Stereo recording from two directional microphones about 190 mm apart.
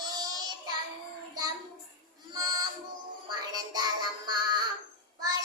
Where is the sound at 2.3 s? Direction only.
20° right (ahead or behind).